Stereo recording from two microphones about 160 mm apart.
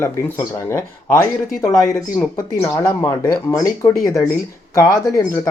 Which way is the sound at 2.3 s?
20° left (ahead or behind).